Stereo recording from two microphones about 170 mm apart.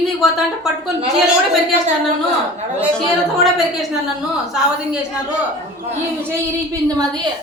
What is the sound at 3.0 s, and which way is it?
Speech, centre (ahead or behind).